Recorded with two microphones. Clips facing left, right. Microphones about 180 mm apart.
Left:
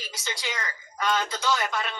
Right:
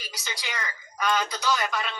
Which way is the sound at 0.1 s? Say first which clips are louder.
Left 2 dB; 25° left (ahead or behind).